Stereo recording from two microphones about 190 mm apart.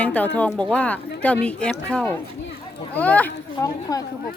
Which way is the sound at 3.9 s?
20° left (ahead or behind).